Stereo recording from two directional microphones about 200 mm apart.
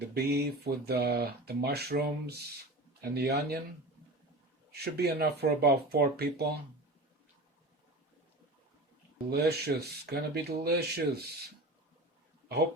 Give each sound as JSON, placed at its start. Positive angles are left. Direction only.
{"t": 0.1, "sound": "speech", "side_deg": -50}
{"t": 4.7, "sound": "speech", "side_deg": -55}
{"t": 9.3, "sound": "speech", "side_deg": -55}